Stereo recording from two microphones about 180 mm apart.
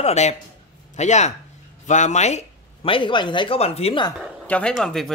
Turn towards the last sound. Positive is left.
turn(degrees=0)  # may be behind; listen again after turning